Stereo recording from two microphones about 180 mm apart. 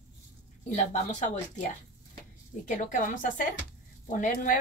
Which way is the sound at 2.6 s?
45° left (ahead or behind).